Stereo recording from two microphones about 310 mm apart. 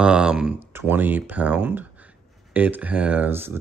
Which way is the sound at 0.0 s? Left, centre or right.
Centre.